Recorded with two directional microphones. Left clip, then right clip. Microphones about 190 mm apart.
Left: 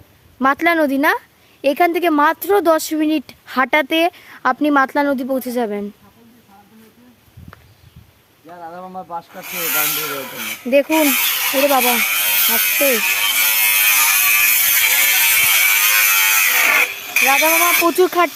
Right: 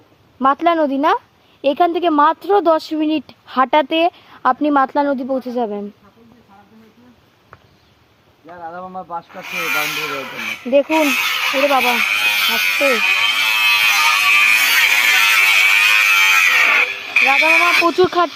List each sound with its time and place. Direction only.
0.3 s a woman's voice: 20° left (ahead or behind)
8.4 s speech: 5° left (ahead or behind)
9.3 s speech: 25° left (ahead or behind)
10.8 s electric shaver: 25° left (ahead or behind)